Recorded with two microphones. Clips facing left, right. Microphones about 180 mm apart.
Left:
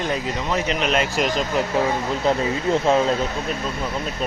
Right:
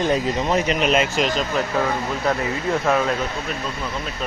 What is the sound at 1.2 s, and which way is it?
Speech, 15° left (ahead or behind).